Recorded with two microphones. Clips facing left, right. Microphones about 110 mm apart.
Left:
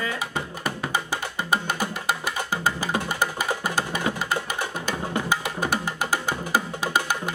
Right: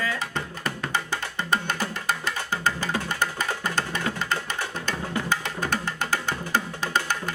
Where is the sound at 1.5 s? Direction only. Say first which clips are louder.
Left 1 dB; 10° left (ahead or behind).